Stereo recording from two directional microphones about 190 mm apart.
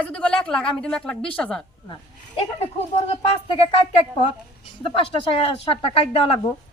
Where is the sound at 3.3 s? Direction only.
30° left (ahead or behind).